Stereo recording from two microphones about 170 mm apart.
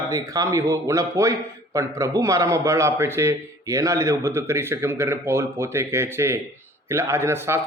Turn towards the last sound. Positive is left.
turn(degrees=-15)  # may be behind; listen again after turning